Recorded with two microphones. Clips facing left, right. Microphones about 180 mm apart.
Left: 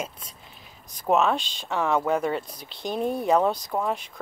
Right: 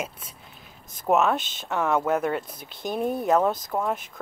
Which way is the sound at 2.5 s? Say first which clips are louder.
Even; 50° right (ahead or behind).